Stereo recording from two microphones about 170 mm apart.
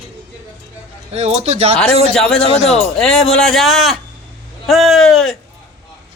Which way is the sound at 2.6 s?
40° left (ahead or behind).